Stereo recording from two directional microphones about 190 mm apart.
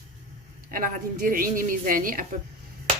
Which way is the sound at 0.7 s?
45° right (ahead or behind).